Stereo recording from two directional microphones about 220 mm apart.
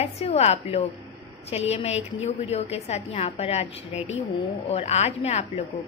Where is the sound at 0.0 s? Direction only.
30° left (ahead or behind).